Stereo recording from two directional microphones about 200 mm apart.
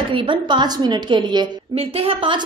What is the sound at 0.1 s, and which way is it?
A woman's voice, 25° right (ahead or behind).